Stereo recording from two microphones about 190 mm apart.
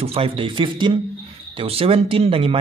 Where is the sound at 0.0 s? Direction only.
30° right (ahead or behind).